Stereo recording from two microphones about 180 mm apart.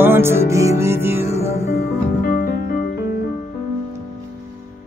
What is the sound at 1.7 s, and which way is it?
Music, 55° left (ahead or behind).